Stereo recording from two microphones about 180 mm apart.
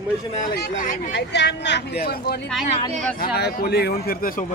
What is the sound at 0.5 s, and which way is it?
Speech, 60° left (ahead or behind).